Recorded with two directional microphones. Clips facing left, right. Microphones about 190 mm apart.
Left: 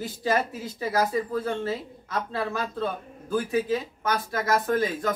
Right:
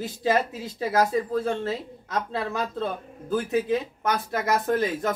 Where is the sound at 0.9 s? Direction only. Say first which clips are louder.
Right 2 dB; 25° right (ahead or behind).